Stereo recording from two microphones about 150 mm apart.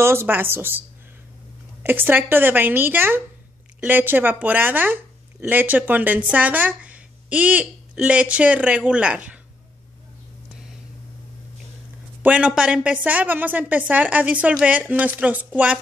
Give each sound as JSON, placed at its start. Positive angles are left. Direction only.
{"t": 0.0, "sound": "speech", "side_deg": -15}
{"t": 12.2, "sound": "speech", "side_deg": -10}